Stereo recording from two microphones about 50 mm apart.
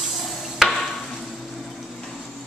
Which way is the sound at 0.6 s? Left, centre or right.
Centre.